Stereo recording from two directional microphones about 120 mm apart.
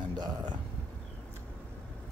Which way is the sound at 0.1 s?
35° right (ahead or behind).